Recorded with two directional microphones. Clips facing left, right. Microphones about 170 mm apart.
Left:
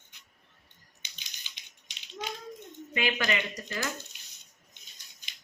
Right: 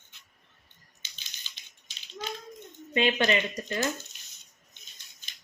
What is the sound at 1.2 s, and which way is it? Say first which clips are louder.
Typewriter: right 1 dB; 15° left (ahead or behind).